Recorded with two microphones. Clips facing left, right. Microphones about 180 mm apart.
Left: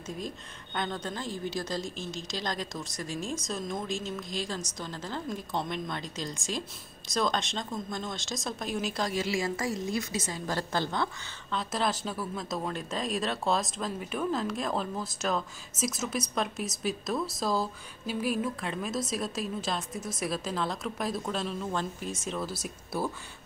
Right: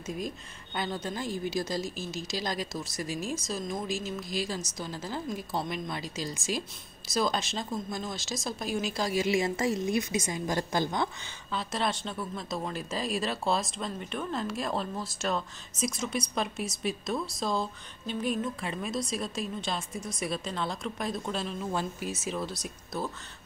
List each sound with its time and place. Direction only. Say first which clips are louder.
0.7 s a woman's voice: right 1 dB; 5° right (ahead or behind)
9.2 s a woman's voice: right 3 dB; 20° right (ahead or behind)
11.5 s speech: left 1 dB; centre (ahead or behind)